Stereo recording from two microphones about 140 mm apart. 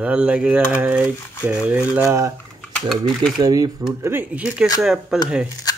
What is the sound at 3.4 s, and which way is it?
Speech, 25° right (ahead or behind).